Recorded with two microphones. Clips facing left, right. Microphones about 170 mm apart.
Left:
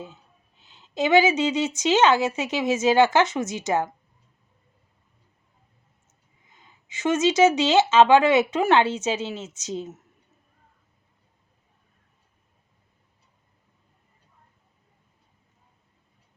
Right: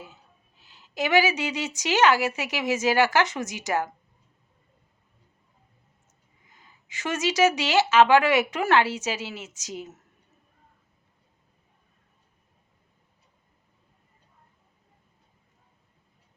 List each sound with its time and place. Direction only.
0.6 s speech: 25° left (ahead or behind)
6.6 s speech: 20° left (ahead or behind)